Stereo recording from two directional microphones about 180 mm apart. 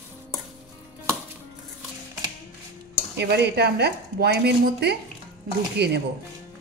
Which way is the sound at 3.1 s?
65° right (ahead or behind).